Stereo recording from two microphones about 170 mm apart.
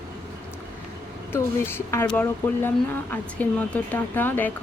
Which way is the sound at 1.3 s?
15° left (ahead or behind).